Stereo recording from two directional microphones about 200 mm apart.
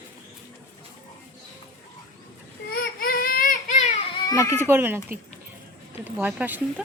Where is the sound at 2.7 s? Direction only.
50° left (ahead or behind).